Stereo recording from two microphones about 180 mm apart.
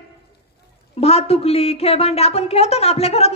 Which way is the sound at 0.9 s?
35° left (ahead or behind).